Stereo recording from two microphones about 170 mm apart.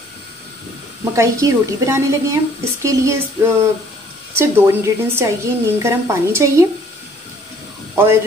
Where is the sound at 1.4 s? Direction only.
20° right (ahead or behind).